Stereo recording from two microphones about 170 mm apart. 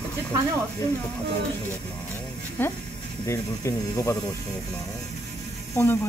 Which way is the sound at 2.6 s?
10° left (ahead or behind).